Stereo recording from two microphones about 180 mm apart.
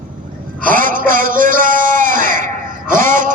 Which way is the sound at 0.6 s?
50° right (ahead or behind).